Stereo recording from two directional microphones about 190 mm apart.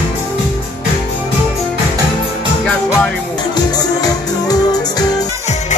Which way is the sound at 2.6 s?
5° left (ahead or behind).